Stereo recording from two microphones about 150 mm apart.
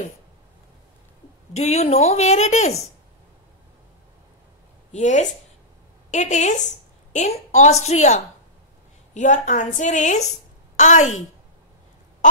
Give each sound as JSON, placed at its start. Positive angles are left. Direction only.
{"t": 1.5, "sound": "speech", "side_deg": 45}
{"t": 4.9, "sound": "a woman's voice", "side_deg": 50}